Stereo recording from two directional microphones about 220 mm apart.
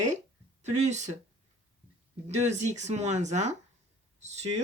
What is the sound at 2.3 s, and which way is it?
Speech, 30° right (ahead or behind).